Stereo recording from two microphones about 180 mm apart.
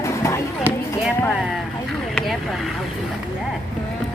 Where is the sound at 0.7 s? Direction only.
10° right (ahead or behind).